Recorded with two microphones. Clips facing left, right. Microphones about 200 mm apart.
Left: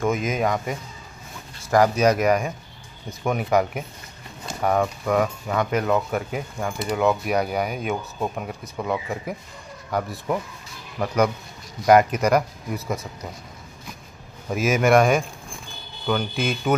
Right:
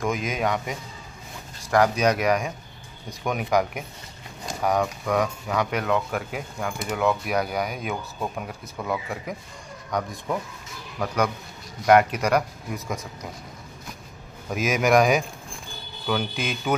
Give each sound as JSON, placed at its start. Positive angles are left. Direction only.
{"t": 0.0, "sound": "speech", "side_deg": 5}
{"t": 11.8, "sound": "speech", "side_deg": 0}
{"t": 14.5, "sound": "speech", "side_deg": 0}